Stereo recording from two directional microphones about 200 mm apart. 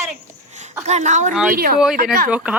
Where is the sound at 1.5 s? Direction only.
45° right (ahead or behind).